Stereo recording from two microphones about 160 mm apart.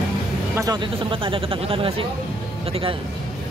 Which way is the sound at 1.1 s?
35° right (ahead or behind).